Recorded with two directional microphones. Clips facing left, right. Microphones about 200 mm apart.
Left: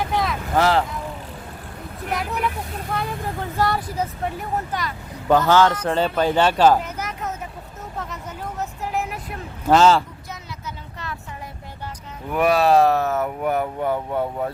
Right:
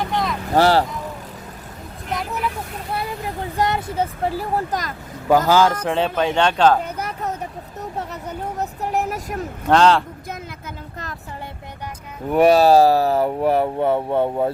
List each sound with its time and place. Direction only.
0.0 s vehicle: centre (ahead or behind)
0.5 s speech: 35° right (ahead or behind)
2.1 s vehicle: centre (ahead or behind)
2.9 s speech: 10° right (ahead or behind); by 4.9 s 40° right (ahead or behind)
5.3 s a man's voice: 10° right (ahead or behind); by 6.7 s 5° left (ahead or behind)
6.8 s vehicle: 35° right (ahead or behind)
8.5 s vehicle: 40° right (ahead or behind)
9.6 s a man's voice: 5° left (ahead or behind)
12.3 s speech: 30° right (ahead or behind)